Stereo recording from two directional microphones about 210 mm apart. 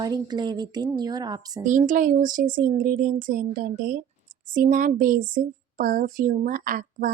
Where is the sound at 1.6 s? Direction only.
35° right (ahead or behind).